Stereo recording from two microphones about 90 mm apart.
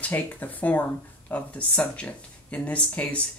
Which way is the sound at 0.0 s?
20° left (ahead or behind).